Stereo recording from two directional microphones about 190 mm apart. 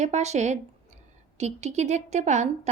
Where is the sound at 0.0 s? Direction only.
35° right (ahead or behind).